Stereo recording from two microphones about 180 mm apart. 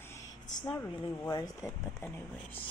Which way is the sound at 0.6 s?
10° left (ahead or behind).